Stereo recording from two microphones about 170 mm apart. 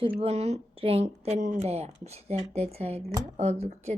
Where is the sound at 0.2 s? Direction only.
35° right (ahead or behind).